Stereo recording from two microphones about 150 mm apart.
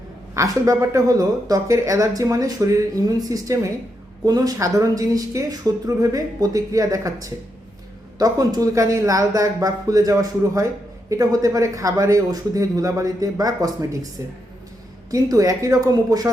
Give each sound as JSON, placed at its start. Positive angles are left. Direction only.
{"t": 0.3, "sound": "speech", "side_deg": -20}
{"t": 15.1, "sound": "speech", "side_deg": -25}